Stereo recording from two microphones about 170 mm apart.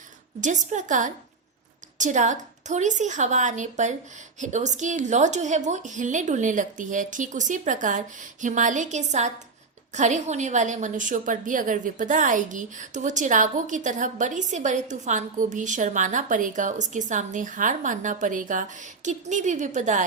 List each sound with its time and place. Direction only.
0.4 s a woman's voice: 45° right (ahead or behind)